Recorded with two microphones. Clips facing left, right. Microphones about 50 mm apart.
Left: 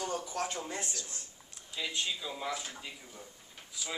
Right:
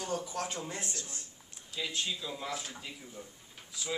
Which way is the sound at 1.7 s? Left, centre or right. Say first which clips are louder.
Even; centre.